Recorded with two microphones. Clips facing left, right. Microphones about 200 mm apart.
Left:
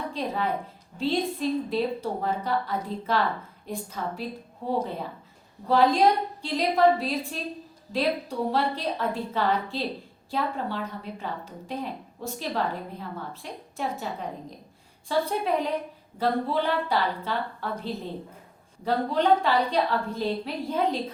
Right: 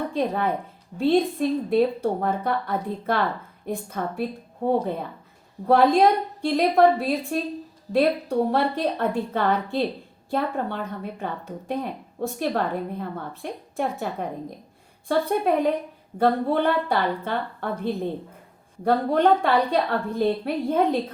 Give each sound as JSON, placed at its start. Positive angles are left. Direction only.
{"t": 0.1, "sound": "a woman's voice", "side_deg": -55}